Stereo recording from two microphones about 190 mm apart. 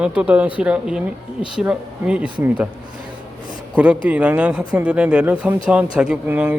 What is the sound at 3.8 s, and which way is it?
A man's voice, 5° right (ahead or behind).